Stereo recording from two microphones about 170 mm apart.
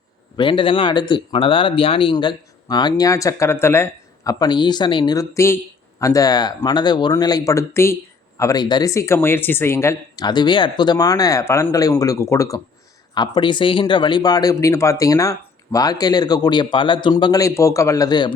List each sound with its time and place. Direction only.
0.3 s speech: 30° left (ahead or behind)